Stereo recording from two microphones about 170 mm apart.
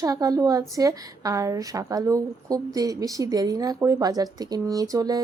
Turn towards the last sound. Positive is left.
turn(degrees=-20)  # may be behind; listen again after turning